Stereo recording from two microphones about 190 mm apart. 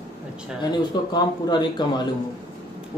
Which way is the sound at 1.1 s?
20° left (ahead or behind).